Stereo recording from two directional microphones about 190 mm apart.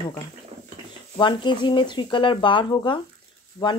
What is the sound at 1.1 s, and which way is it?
Speech, 25° left (ahead or behind).